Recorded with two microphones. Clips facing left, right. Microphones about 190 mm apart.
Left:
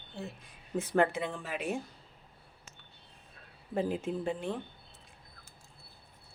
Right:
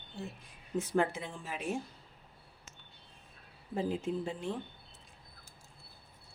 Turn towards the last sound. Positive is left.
turn(degrees=60)  # may be behind; listen again after turning